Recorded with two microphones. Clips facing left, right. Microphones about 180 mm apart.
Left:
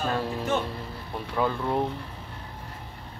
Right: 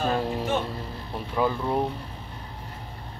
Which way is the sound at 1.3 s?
5° right (ahead or behind).